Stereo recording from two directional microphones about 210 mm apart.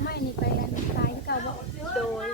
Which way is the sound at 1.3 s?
50° left (ahead or behind).